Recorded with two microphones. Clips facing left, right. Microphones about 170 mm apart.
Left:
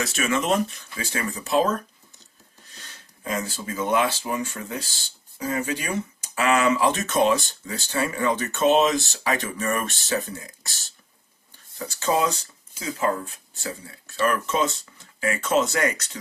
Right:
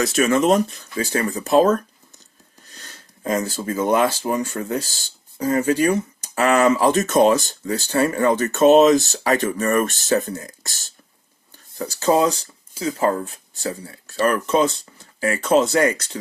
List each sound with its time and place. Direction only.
0.0 s speech: 40° right (ahead or behind)
2.8 s speech: 45° right (ahead or behind)